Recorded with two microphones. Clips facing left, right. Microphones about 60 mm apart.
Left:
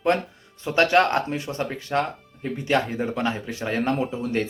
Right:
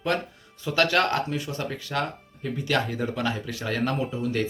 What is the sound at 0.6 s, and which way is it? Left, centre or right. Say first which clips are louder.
Speech: left 4 dB; left.